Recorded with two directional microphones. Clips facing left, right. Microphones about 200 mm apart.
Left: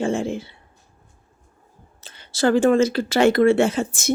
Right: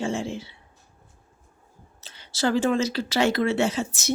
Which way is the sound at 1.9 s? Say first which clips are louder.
Left 5 dB; 50° left (ahead or behind).